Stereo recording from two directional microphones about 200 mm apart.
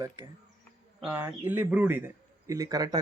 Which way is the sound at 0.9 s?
10° right (ahead or behind).